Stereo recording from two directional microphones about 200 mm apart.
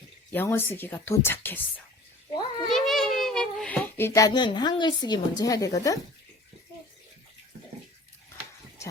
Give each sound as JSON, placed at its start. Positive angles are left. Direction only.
{"t": 0.3, "sound": "a woman's voice", "side_deg": 10}
{"t": 2.6, "sound": "a sound", "side_deg": 0}
{"t": 5.4, "sound": "a woman's voice", "side_deg": 15}